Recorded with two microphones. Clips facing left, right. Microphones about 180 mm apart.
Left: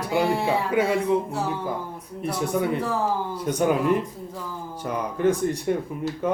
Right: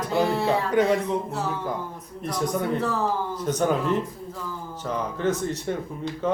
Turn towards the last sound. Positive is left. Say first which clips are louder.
# left 1 dB
turn(degrees=10)  # may be behind; listen again after turning